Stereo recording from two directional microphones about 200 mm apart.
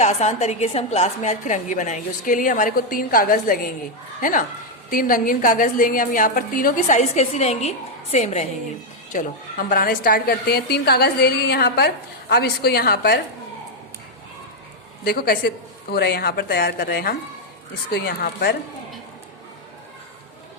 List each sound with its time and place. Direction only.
0.0 s a woman's voice: 35° left (ahead or behind); by 13.1 s 50° left (ahead or behind)
15.0 s a woman's voice: 50° left (ahead or behind)